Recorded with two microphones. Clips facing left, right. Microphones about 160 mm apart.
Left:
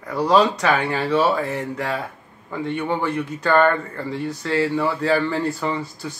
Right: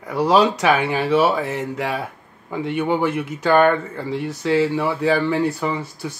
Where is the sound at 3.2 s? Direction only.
15° right (ahead or behind).